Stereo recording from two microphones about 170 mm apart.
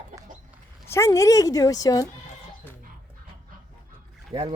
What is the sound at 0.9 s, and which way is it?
A woman's voice, 15° left (ahead or behind).